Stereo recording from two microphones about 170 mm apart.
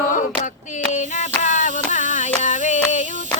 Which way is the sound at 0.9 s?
45° left (ahead or behind).